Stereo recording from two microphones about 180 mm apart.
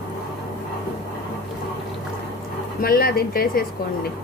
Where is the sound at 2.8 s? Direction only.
55° left (ahead or behind).